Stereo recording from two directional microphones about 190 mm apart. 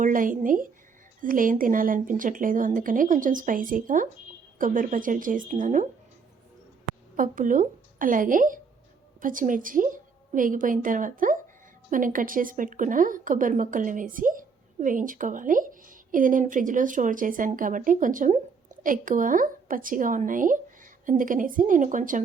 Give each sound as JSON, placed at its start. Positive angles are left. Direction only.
{"t": 0.0, "sound": "a woman's voice", "side_deg": -45}
{"t": 7.2, "sound": "a woman's voice", "side_deg": -45}